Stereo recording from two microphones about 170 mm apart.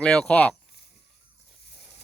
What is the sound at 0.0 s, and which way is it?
Speech, 5° left (ahead or behind).